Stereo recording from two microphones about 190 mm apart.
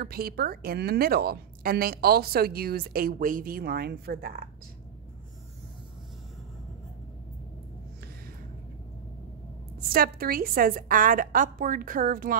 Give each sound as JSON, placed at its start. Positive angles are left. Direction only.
{"t": 0.0, "sound": "a woman's voice", "side_deg": -50}
{"t": 9.8, "sound": "a woman's voice", "side_deg": -50}